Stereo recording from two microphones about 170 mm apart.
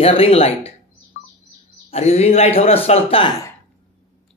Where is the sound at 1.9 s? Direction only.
40° left (ahead or behind).